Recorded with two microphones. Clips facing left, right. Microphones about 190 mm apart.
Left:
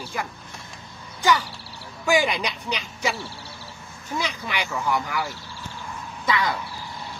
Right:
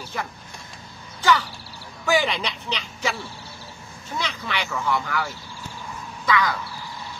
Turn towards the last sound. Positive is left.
turn(degrees=25)  # may be behind; listen again after turning